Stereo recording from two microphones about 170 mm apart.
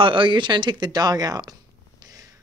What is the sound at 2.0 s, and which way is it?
Purr, 20° right (ahead or behind).